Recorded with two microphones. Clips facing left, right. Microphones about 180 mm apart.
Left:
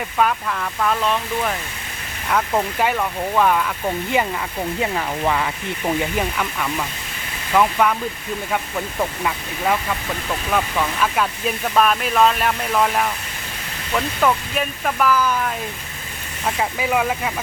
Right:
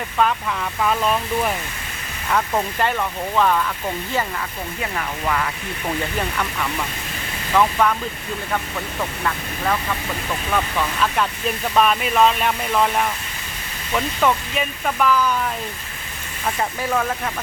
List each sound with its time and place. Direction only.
0.2 s speech: centre (ahead or behind)
2.3 s speech: 5° left (ahead or behind)
4.8 s speech: 25° left (ahead or behind)
6.1 s speech: 5° left (ahead or behind)
10.5 s speech: 5° left (ahead or behind)
16.6 s speech: 10° left (ahead or behind)